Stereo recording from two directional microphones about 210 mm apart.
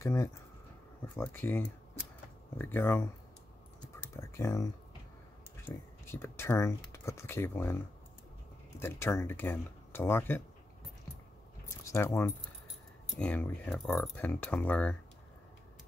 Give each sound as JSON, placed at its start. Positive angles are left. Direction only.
{"t": 0.0, "sound": "speech", "side_deg": 15}
{"t": 4.2, "sound": "speech", "side_deg": 15}
{"t": 5.7, "sound": "speech", "side_deg": 10}
{"t": 11.9, "sound": "speech", "side_deg": 10}